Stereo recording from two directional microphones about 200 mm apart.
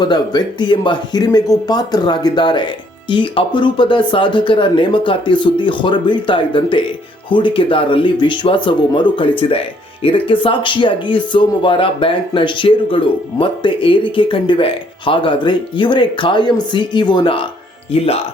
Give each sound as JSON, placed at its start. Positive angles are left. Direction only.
{"t": 0.0, "sound": "speech", "side_deg": 20}